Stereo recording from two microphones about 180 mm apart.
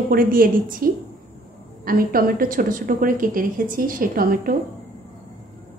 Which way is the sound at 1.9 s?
55° right (ahead or behind).